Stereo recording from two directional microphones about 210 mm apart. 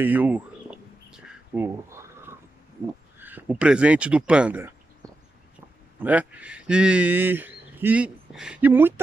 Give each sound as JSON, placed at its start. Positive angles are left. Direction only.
{"t": 0.0, "sound": "a sound", "side_deg": -10}
{"t": 3.2, "sound": "speech", "side_deg": -10}
{"t": 5.9, "sound": "speech", "side_deg": -5}